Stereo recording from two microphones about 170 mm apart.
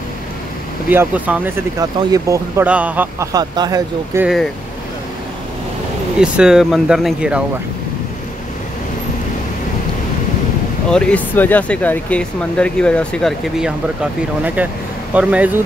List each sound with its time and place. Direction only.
0.8 s speech: 10° right (ahead or behind)
1.8 s speech: 20° right (ahead or behind)
3.3 s speech: 25° right (ahead or behind)
6.1 s speech: 5° right (ahead or behind)
10.9 s speech: 5° left (ahead or behind)